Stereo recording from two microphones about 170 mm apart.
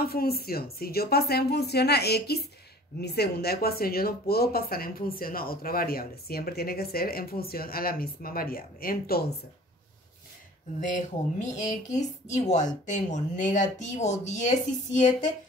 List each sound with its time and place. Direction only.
0.0 s speech: 65° left (ahead or behind)
11.5 s speech: 45° left (ahead or behind)